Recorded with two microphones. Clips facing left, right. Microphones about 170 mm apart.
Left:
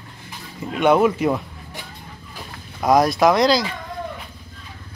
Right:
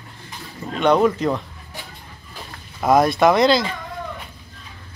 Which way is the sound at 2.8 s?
Centre (ahead or behind).